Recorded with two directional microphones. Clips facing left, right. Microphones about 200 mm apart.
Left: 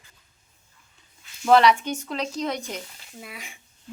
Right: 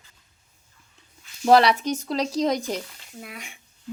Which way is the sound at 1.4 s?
35° right (ahead or behind).